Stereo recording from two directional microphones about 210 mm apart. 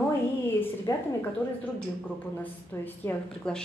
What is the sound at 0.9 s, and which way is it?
Speech, 15° left (ahead or behind).